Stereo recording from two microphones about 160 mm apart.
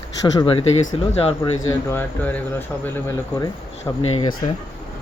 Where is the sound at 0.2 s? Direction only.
30° left (ahead or behind).